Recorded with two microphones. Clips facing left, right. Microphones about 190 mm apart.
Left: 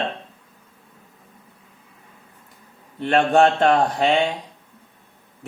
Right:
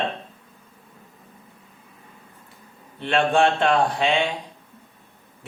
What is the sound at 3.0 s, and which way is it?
Speech, 45° left (ahead or behind).